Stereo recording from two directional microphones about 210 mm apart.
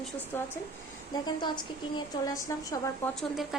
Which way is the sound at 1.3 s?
20° left (ahead or behind).